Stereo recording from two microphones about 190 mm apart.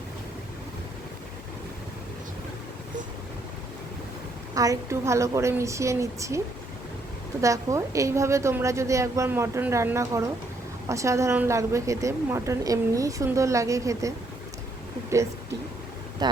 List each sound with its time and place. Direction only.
4.5 s a woman's voice: 15° right (ahead or behind)
7.4 s a woman's voice: 15° right (ahead or behind)
16.2 s boat: 20° right (ahead or behind)